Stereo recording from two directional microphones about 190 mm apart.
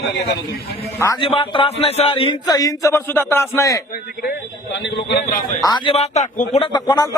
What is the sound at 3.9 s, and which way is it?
Speech, 50° left (ahead or behind).